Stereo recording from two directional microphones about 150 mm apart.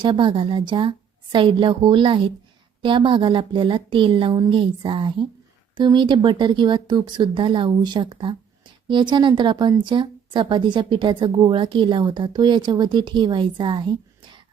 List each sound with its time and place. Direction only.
0.0 s speech: 35° right (ahead or behind)